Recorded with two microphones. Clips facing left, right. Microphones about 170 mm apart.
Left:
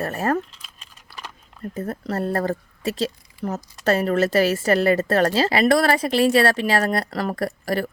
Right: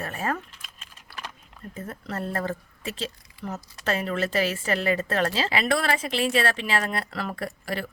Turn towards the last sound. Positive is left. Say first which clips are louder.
# left 7 dB
turn(degrees=40)  # may be behind; listen again after turning